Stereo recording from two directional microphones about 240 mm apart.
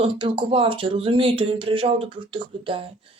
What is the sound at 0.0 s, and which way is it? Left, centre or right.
Speech, right.